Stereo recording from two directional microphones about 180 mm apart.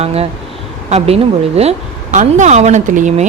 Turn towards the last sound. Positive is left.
turn(degrees=-45)  # may be behind; listen again after turning